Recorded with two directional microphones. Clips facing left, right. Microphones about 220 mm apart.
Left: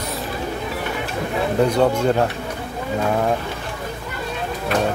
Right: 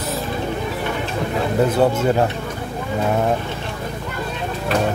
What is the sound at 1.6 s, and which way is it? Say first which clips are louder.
Speech: even; 5° right (ahead or behind).